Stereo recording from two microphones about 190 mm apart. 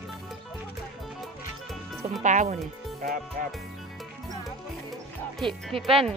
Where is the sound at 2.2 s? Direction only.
40° right (ahead or behind).